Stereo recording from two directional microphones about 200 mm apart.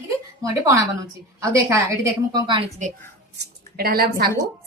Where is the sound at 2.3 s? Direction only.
25° right (ahead or behind).